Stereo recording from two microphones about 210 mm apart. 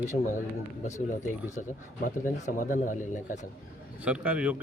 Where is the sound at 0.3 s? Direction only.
35° left (ahead or behind).